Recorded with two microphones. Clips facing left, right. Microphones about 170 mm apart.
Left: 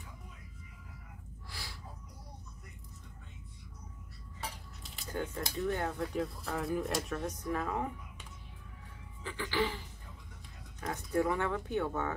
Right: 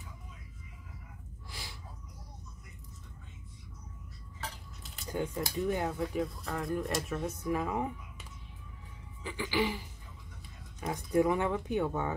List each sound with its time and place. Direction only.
5.1 s speech: 15° right (ahead or behind)
9.2 s speech: 15° right (ahead or behind)
10.8 s speech: 15° right (ahead or behind)